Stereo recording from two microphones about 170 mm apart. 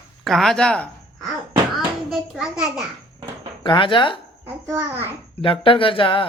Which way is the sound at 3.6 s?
30° left (ahead or behind).